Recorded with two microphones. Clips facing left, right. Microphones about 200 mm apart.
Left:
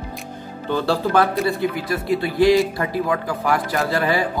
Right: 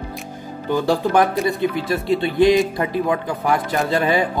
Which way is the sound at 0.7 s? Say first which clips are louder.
Right 2 dB; 15° right (ahead or behind).